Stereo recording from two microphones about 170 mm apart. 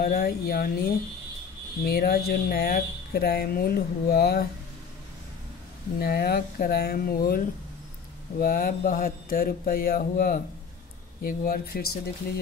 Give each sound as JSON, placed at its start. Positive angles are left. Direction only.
{"t": 0.0, "sound": "speech", "side_deg": 60}
{"t": 5.9, "sound": "speech", "side_deg": 65}